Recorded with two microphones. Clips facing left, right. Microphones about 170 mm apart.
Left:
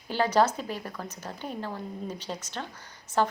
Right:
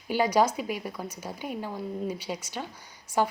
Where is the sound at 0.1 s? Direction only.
10° right (ahead or behind).